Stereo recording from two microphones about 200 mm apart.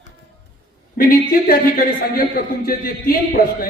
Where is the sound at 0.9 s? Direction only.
45° left (ahead or behind).